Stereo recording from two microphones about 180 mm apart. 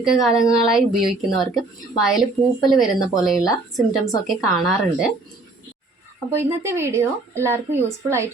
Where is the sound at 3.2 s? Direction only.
Centre (ahead or behind).